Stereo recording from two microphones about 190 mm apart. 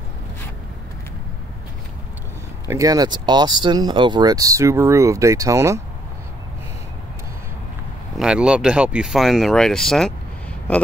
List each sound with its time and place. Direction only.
2.7 s speech: 20° right (ahead or behind)
8.2 s speech: 5° right (ahead or behind)